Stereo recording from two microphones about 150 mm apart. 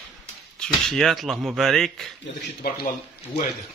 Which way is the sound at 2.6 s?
90° left.